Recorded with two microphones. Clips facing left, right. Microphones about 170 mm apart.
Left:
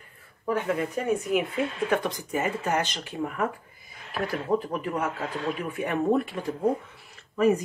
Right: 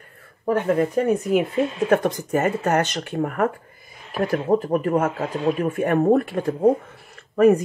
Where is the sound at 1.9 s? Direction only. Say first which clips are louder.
Right 7 dB; 45° right (ahead or behind).